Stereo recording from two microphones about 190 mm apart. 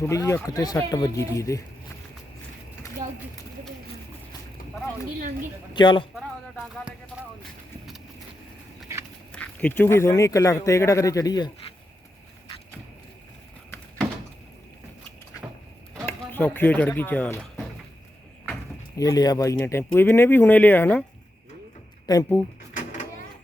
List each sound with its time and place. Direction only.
0.0 s a man's voice: 15° left (ahead or behind)
5.7 s speech: 25° left (ahead or behind)
6.1 s a sound: centre (ahead or behind)
9.3 s a man's voice: 5° left (ahead or behind)
16.0 s speech: 10° left (ahead or behind)
18.9 s a man's voice: 20° left (ahead or behind)
22.0 s speech: 20° left (ahead or behind)